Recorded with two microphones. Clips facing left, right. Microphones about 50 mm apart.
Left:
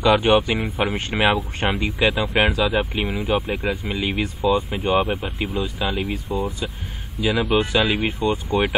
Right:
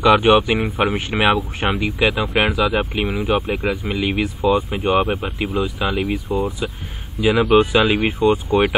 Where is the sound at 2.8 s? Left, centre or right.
Centre.